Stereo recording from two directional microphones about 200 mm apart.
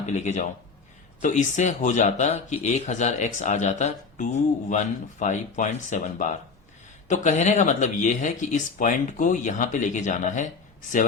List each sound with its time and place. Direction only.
0.0 s speech: 35° left (ahead or behind)